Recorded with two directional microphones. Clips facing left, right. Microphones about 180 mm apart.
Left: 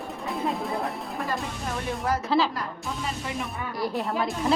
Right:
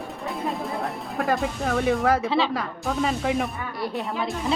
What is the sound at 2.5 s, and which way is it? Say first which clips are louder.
Speech: right 6 dB; 75° right (ahead or behind).